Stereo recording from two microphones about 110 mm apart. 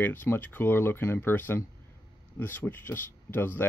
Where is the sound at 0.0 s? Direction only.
15° left (ahead or behind).